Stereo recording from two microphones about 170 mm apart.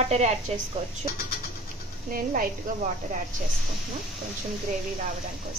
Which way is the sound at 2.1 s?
55° right (ahead or behind).